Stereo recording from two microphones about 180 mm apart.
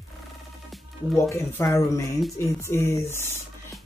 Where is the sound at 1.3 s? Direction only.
15° left (ahead or behind).